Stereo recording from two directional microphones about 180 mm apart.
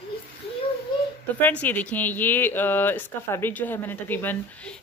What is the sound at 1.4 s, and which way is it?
Speech, 10° left (ahead or behind).